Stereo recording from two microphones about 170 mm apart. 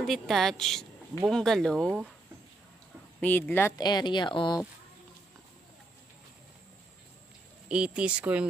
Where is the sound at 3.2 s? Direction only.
10° left (ahead or behind); by 4.6 s 25° left (ahead or behind).